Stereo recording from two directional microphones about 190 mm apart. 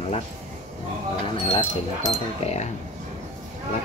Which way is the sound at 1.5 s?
30° left (ahead or behind).